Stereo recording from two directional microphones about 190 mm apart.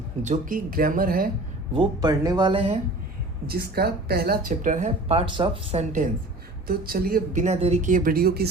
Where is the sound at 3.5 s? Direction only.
55° right (ahead or behind); by 6.0 s 40° right (ahead or behind).